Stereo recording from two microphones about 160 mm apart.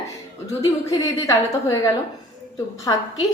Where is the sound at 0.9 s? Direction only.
20° left (ahead or behind).